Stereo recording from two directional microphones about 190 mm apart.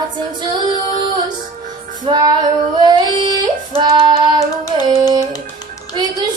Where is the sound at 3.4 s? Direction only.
25° right (ahead or behind).